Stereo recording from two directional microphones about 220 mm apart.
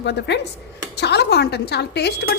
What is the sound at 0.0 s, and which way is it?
A woman's voice, 50° left (ahead or behind).